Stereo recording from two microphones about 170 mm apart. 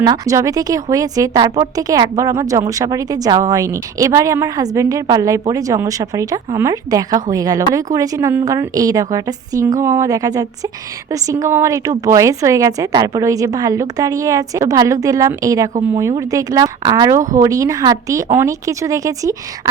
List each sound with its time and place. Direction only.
0.0 s speech: 20° right (ahead or behind)